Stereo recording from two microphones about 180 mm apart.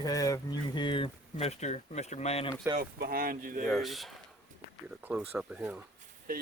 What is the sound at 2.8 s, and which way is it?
Speech, 55° right (ahead or behind).